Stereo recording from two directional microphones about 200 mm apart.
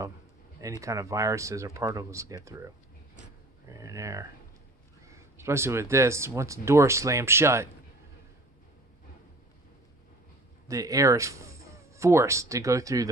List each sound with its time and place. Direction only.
0.6 s speech: 15° right (ahead or behind)
3.2 s a sound: 15° right (ahead or behind)
5.0 s speech: 15° right (ahead or behind)
10.7 s speech: 15° right (ahead or behind)